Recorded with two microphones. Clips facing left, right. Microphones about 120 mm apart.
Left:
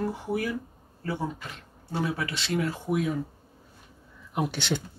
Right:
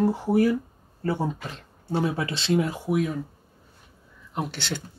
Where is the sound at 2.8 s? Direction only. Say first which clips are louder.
Right 2 dB; centre (ahead or behind).